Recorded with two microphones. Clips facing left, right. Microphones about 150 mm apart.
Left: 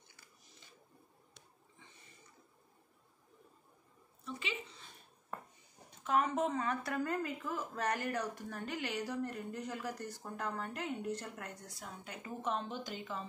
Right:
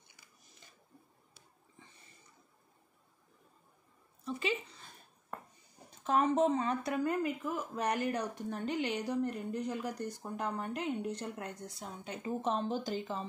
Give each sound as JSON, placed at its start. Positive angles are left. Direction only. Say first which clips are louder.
{"t": 4.4, "sound": "speech", "louder": "right 9 dB", "side_deg": -40}
{"t": 5.9, "sound": "speech", "louder": "right 3 dB", "side_deg": -30}